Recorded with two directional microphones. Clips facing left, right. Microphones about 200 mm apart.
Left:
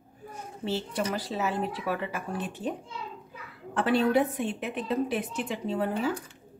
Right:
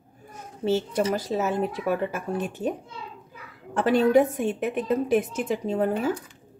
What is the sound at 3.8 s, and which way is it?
A woman's voice, 45° right (ahead or behind).